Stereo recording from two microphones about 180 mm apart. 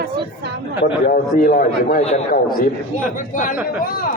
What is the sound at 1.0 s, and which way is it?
Speech, 50° left (ahead or behind).